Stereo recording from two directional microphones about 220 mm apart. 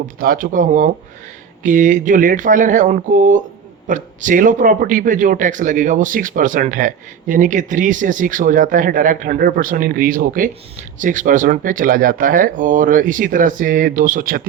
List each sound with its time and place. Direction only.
0.2 s a man's voice: 40° right (ahead or behind)